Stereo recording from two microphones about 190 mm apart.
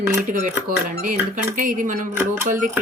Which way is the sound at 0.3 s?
45° right (ahead or behind).